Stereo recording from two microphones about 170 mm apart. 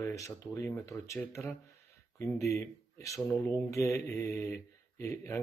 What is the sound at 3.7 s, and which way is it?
Speech, 15° left (ahead or behind).